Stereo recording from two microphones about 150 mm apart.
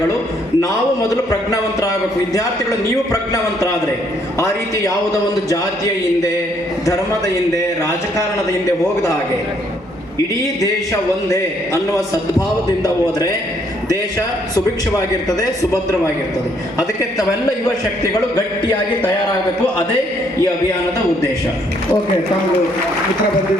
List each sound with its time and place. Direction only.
0.6 s a man's voice: 25° left (ahead or behind)
7.5 s a man's voice: 20° left (ahead or behind)
11.3 s a man's voice: 20° left (ahead or behind)
14.2 s a man's voice: 25° left (ahead or behind)